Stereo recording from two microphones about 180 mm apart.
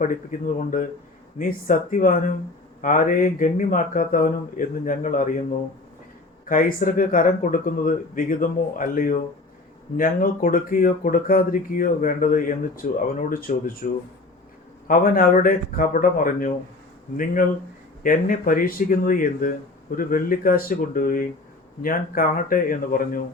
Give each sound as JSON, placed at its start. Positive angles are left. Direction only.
{"t": 0.0, "sound": "speech", "side_deg": 45}
{"t": 6.4, "sound": "speech", "side_deg": 50}
{"t": 14.8, "sound": "speech", "side_deg": 50}
{"t": 18.0, "sound": "speech", "side_deg": 50}